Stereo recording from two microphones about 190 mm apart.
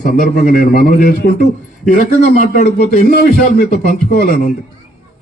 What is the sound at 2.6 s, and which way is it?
A man's voice, 45° left (ahead or behind).